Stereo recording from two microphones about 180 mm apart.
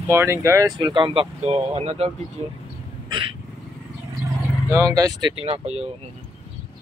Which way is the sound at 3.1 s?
30° right (ahead or behind).